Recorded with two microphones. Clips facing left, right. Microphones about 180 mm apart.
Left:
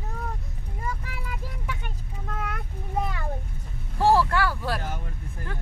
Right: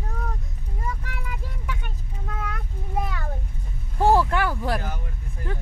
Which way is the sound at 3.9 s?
15° right (ahead or behind).